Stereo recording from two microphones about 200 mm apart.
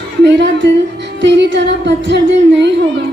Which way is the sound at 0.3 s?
60° right (ahead or behind).